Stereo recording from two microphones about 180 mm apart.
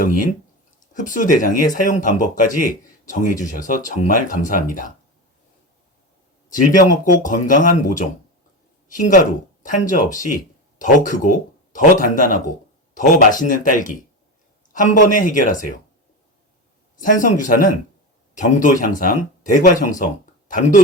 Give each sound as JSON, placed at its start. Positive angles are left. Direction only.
{"t": 0.0, "sound": "speech", "side_deg": 50}
{"t": 6.7, "sound": "speech", "side_deg": 50}
{"t": 17.0, "sound": "speech", "side_deg": 45}